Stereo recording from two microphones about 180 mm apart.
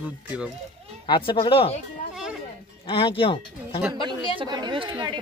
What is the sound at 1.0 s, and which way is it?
Speech, 25° left (ahead or behind).